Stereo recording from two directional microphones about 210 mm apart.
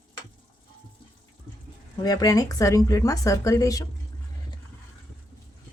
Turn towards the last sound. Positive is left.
turn(degrees=15)  # may be behind; listen again after turning